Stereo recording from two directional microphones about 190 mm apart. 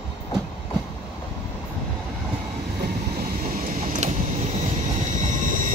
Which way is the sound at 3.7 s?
35° right (ahead or behind).